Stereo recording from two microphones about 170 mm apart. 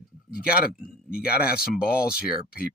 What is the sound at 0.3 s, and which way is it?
Speech, 65° left (ahead or behind).